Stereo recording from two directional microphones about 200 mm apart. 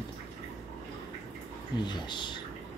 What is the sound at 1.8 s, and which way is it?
Speech, 20° left (ahead or behind).